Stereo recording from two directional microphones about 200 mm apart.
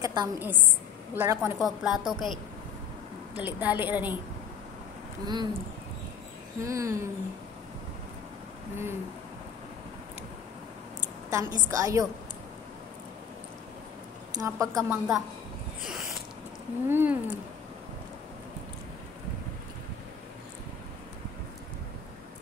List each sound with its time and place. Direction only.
0.0 s a woman's voice: 20° right (ahead or behind); by 2.3 s centre (ahead or behind)
3.3 s a woman's voice: 10° right (ahead or behind)
5.2 s speech: 20° right (ahead or behind)
6.6 s a woman's voice: 15° right (ahead or behind)
11.2 s a woman's voice: 15° right (ahead or behind)
14.4 s a woman's voice: 15° right (ahead or behind)
14.9 s speech: 5° right (ahead or behind)
15.8 s a sound: centre (ahead or behind)
16.9 s a woman's voice: 10° right (ahead or behind)